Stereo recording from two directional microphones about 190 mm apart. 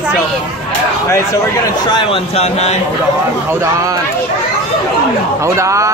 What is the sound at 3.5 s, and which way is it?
Speech, 15° right (ahead or behind).